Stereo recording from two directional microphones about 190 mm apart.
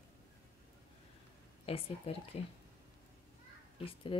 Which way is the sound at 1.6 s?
30° left (ahead or behind).